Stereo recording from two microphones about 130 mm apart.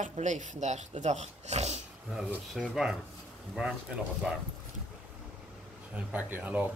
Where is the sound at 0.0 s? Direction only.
65° right (ahead or behind).